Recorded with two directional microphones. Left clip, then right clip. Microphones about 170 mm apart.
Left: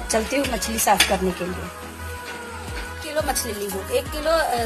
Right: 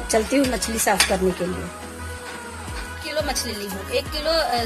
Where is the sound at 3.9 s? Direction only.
15° left (ahead or behind).